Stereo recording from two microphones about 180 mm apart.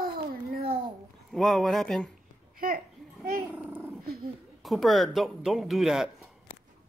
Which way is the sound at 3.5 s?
10° right (ahead or behind).